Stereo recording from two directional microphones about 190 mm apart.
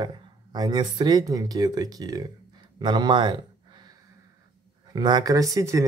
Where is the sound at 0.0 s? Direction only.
20° right (ahead or behind).